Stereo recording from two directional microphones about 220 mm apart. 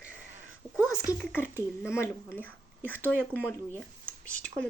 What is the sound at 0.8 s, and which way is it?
Speech, 15° left (ahead or behind).